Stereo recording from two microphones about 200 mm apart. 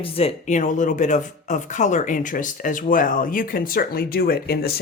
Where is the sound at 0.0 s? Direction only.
30° left (ahead or behind).